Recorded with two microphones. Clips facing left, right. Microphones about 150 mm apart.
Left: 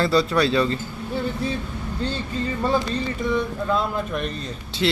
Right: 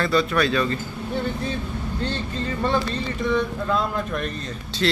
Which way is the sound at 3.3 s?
5° left (ahead or behind).